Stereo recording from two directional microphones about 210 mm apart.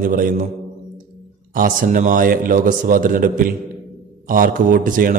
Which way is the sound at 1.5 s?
40° right (ahead or behind).